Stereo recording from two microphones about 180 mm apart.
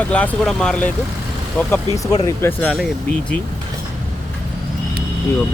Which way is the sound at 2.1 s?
15° left (ahead or behind).